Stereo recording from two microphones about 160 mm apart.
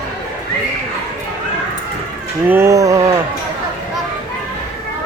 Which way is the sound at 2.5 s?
15° right (ahead or behind).